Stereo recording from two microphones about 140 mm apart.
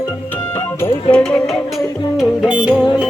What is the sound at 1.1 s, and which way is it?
Music, 10° left (ahead or behind).